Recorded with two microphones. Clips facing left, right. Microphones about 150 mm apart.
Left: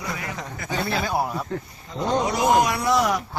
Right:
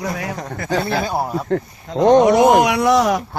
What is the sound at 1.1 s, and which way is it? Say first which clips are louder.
Speech: right 3 dB; 30° right (ahead or behind).